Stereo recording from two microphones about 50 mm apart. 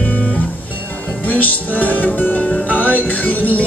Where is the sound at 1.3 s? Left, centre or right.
Left.